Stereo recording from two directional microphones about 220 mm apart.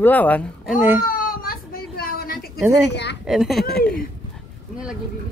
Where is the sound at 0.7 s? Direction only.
10° right (ahead or behind).